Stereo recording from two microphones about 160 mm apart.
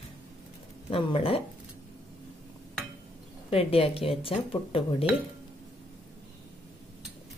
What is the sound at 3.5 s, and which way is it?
Speech, 35° left (ahead or behind).